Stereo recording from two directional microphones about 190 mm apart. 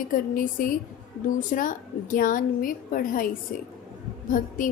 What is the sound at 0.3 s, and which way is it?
A woman's voice, 45° left (ahead or behind).